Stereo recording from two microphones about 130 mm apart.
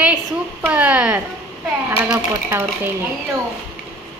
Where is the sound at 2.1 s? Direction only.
15° right (ahead or behind).